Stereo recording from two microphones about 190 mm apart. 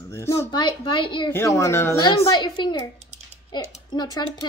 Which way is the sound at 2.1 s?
25° left (ahead or behind).